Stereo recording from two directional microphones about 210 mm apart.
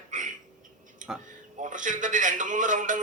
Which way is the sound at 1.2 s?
35° right (ahead or behind).